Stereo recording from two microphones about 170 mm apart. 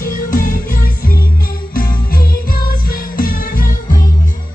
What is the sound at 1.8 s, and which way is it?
Music, 55° left (ahead or behind).